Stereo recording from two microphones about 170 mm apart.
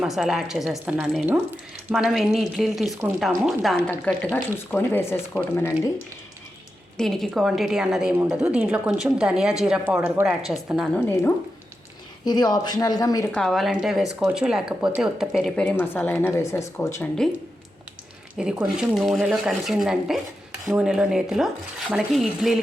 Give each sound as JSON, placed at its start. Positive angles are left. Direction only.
{"t": 0.0, "sound": "speech", "side_deg": -5}
{"t": 3.9, "sound": "speech", "side_deg": 10}
{"t": 6.9, "sound": "speech", "side_deg": 0}
{"t": 11.0, "sound": "speech", "side_deg": 15}
{"t": 13.3, "sound": "speech", "side_deg": 0}
{"t": 18.3, "sound": "speech", "side_deg": -5}